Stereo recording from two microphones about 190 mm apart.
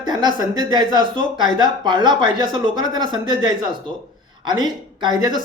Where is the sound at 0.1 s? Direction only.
25° right (ahead or behind).